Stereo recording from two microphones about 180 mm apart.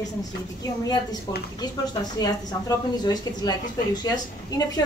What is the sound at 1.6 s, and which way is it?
Speech, 20° left (ahead or behind).